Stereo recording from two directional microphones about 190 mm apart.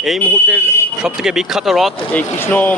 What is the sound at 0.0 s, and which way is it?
Speech, centre (ahead or behind).